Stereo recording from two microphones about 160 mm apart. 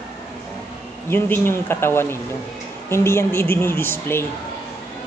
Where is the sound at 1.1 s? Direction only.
15° left (ahead or behind).